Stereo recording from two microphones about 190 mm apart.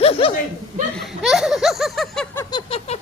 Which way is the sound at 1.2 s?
Centre (ahead or behind).